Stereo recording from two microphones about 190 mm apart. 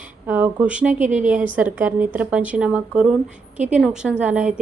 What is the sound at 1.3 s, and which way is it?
A woman's voice, 10° right (ahead or behind).